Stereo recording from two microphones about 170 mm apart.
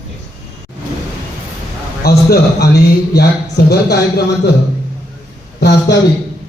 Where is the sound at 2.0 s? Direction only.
70° left (ahead or behind).